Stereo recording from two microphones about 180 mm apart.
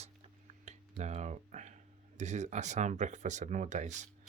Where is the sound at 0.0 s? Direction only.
40° right (ahead or behind).